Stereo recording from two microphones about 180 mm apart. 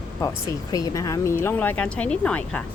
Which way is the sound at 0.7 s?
20° left (ahead or behind).